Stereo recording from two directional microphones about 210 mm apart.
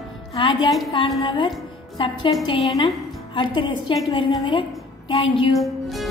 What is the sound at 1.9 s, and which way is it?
Speech, 25° left (ahead or behind).